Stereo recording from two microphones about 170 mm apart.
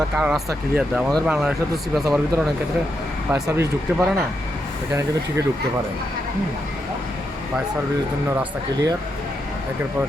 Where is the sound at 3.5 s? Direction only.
15° right (ahead or behind).